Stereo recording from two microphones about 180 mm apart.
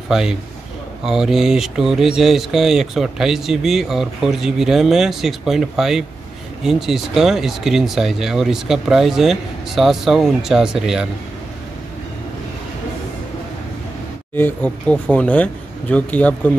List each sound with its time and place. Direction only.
0.1 s speech: centre (ahead or behind)
14.3 s speech: 10° left (ahead or behind)